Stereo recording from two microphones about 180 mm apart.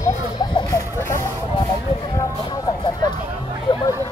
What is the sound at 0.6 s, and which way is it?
Chicken, 20° left (ahead or behind).